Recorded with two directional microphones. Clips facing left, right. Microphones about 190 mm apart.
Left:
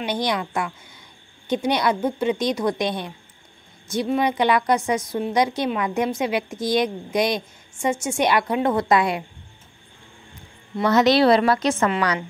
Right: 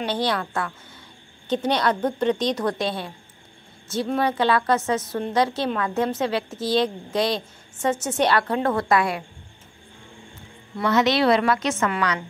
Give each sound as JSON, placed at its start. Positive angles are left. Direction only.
{"t": 0.0, "sound": "a woman's voice", "side_deg": 15}
{"t": 4.2, "sound": "a woman's voice", "side_deg": 15}
{"t": 10.9, "sound": "a woman's voice", "side_deg": 40}